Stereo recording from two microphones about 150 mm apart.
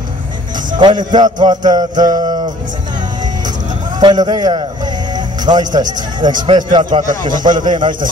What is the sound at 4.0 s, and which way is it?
Music, 30° right (ahead or behind).